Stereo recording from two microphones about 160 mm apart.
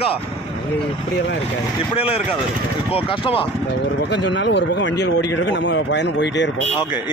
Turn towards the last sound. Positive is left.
turn(degrees=90)